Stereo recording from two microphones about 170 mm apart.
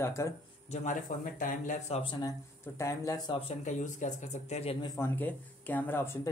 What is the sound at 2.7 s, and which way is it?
Speech, 20° left (ahead or behind).